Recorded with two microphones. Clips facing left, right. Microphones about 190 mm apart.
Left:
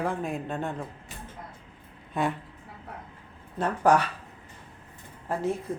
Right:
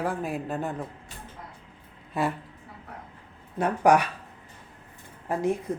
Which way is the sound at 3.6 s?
15° right (ahead or behind).